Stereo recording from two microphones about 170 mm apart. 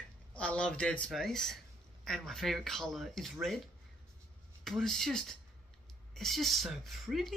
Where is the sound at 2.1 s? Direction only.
Centre (ahead or behind).